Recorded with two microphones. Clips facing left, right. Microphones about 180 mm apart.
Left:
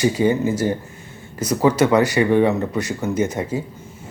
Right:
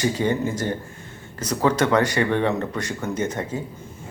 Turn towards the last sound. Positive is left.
turn(degrees=10)  # may be behind; listen again after turning